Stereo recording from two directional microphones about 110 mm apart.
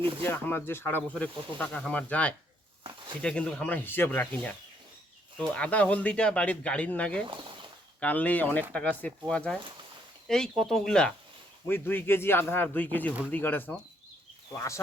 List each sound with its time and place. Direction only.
0.2 s a man's voice: 20° left (ahead or behind)
7.3 s a sound: 45° right (ahead or behind)
8.0 s speech: 15° left (ahead or behind)
11.7 s a man's voice: 20° left (ahead or behind)
14.5 s a man's voice: 25° left (ahead or behind)